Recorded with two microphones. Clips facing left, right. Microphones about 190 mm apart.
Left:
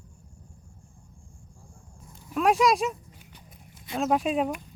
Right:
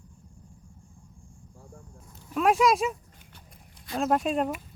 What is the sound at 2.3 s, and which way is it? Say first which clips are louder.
Speech: even; centre (ahead or behind).